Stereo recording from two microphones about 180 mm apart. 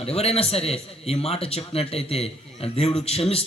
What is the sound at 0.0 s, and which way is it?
A man's voice, 35° left (ahead or behind).